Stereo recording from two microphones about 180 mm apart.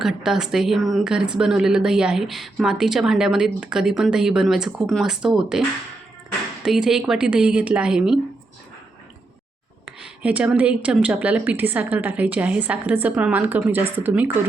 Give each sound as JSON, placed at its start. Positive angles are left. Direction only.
{"t": 0.0, "sound": "a woman's voice", "side_deg": 0}
{"t": 9.8, "sound": "speech", "side_deg": -5}